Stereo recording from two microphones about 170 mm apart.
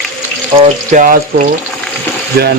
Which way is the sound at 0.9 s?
55° right (ahead or behind).